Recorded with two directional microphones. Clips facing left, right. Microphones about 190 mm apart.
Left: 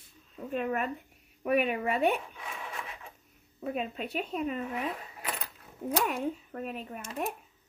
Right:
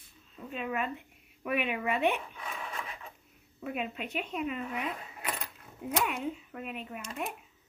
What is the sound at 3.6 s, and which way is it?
A woman's voice, 35° left (ahead or behind).